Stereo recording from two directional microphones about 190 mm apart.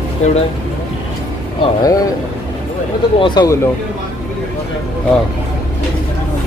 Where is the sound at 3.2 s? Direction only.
25° left (ahead or behind).